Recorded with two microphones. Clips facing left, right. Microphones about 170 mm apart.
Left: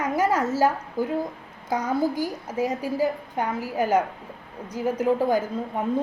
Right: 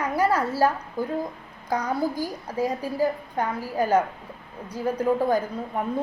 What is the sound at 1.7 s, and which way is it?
Speech, 20° left (ahead or behind).